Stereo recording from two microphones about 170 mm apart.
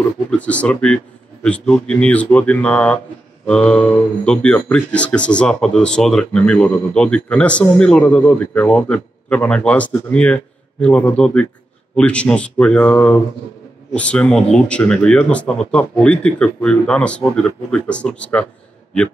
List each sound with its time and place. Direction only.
0.4 s speech: 10° left (ahead or behind)